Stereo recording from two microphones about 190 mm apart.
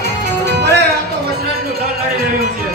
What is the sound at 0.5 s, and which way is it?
Music, 60° right (ahead or behind).